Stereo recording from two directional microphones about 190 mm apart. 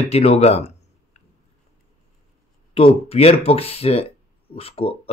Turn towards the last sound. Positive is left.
turn(degrees=30)  # may be behind; listen again after turning